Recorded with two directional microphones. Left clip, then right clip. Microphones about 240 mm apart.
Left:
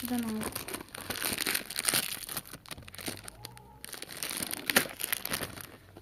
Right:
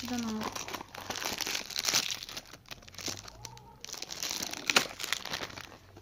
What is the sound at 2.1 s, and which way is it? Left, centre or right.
Crumpling, centre.